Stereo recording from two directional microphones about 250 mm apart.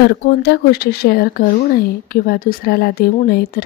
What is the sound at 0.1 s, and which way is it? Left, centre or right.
Speech, left.